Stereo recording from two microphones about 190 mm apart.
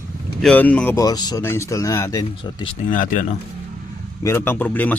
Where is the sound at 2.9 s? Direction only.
45° left (ahead or behind).